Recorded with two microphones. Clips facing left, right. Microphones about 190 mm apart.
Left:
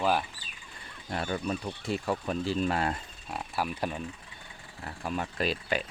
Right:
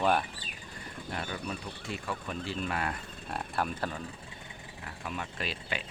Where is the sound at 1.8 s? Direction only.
40° left (ahead or behind).